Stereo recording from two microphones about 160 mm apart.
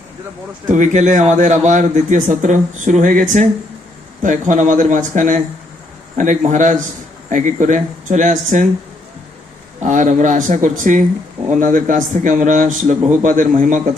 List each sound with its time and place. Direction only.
0.7 s a man's voice: 50° right (ahead or behind)
9.8 s a man's voice: 50° right (ahead or behind)